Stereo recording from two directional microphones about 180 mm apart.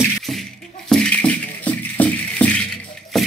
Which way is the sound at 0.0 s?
Centre (ahead or behind).